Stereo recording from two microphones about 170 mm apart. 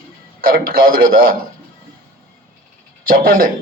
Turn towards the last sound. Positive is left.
turn(degrees=-55)  # may be behind; listen again after turning